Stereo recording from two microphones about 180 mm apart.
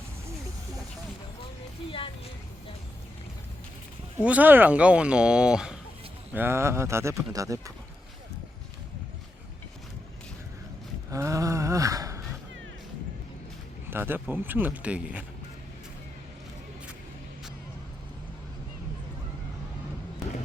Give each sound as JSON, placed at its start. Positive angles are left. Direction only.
{"t": 4.2, "sound": "speech", "side_deg": -10}
{"t": 11.1, "sound": "gasp", "side_deg": -15}
{"t": 13.9, "sound": "speech", "side_deg": -10}